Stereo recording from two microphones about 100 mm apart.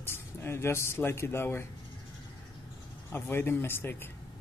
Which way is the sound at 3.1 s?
20° left (ahead or behind).